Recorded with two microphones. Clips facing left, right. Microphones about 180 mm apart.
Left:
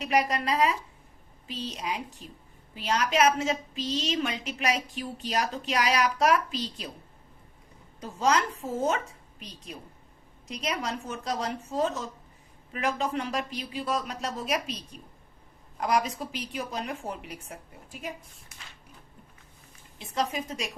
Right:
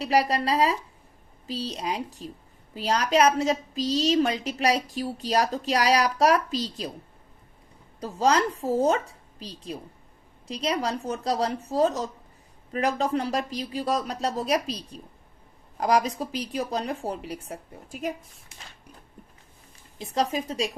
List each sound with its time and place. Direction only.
0.0 s a woman's voice: 35° right (ahead or behind)
8.0 s a woman's voice: 35° right (ahead or behind)
20.0 s a woman's voice: 35° right (ahead or behind)